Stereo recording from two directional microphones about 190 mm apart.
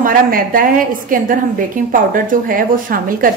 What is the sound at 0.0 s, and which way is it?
A woman's voice, 45° right (ahead or behind).